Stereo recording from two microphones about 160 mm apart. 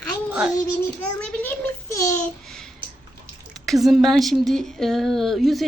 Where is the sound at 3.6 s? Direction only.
Centre (ahead or behind).